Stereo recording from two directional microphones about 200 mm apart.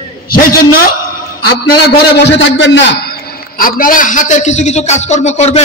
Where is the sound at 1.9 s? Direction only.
60° left (ahead or behind).